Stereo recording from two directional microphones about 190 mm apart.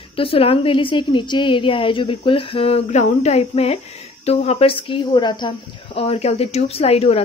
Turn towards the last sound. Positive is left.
turn(degrees=30)  # may be behind; listen again after turning